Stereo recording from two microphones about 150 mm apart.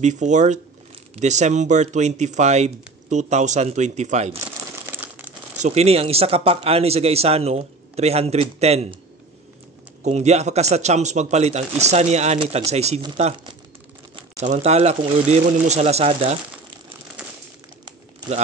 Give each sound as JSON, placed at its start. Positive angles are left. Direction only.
{"t": 0.0, "sound": "speech", "side_deg": -50}
{"t": 4.8, "sound": "crumpling", "side_deg": -15}
{"t": 5.6, "sound": "speech", "side_deg": -50}
{"t": 10.0, "sound": "speech", "side_deg": -45}
{"t": 14.4, "sound": "speech", "side_deg": -50}